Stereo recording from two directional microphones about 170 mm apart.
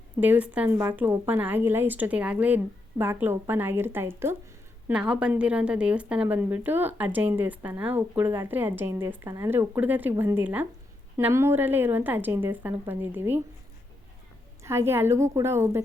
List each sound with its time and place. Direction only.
0.2 s speech: 10° right (ahead or behind)
14.6 s speech: 15° right (ahead or behind)